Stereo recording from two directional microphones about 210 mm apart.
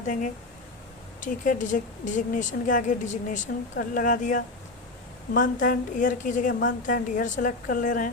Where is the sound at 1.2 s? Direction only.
40° left (ahead or behind).